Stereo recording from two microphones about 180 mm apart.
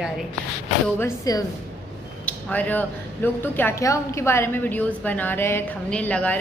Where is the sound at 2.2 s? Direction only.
10° left (ahead or behind).